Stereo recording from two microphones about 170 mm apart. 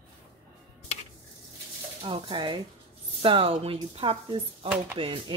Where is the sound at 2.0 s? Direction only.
30° right (ahead or behind).